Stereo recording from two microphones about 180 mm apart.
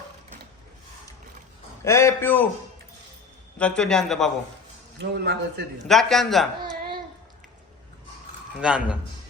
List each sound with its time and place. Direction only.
1.8 s a man's voice: 15° left (ahead or behind)
3.6 s a man's voice: 5° left (ahead or behind)
4.9 s a man's voice: 65° right (ahead or behind)
5.9 s a man's voice: centre (ahead or behind)
8.6 s a man's voice: 5° right (ahead or behind)